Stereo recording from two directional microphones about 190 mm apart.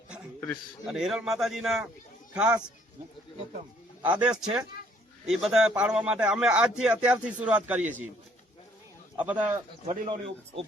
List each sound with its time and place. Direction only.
0.9 s a man's voice: 5° right (ahead or behind)
4.0 s a man's voice: 5° right (ahead or behind)
9.1 s speech: 10° right (ahead or behind)
9.8 s a man's voice: 40° right (ahead or behind)
10.1 s a man's voice: 30° right (ahead or behind)